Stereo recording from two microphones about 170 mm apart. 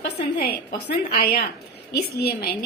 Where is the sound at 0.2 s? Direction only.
65° left (ahead or behind).